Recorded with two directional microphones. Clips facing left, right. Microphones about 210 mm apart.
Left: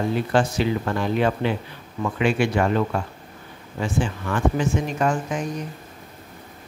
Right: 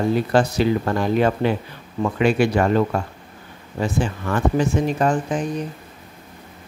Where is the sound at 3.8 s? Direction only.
40° right (ahead or behind).